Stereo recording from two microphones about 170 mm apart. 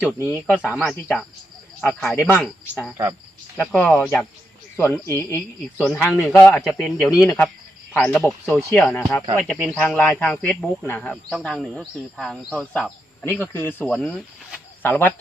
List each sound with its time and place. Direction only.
0.3 s speech: 5° right (ahead or behind); by 6.2 s 15° left (ahead or behind)
6.4 s speech: centre (ahead or behind)